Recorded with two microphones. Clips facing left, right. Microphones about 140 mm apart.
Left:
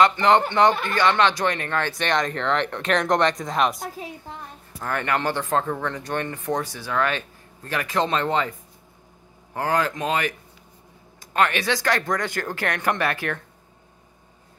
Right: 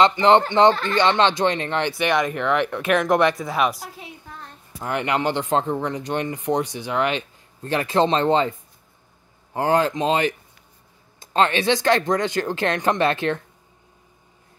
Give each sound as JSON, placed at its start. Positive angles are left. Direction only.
{"t": 0.0, "sound": "speech", "side_deg": -25}
{"t": 2.0, "sound": "speech", "side_deg": -10}
{"t": 4.7, "sound": "speech", "side_deg": -20}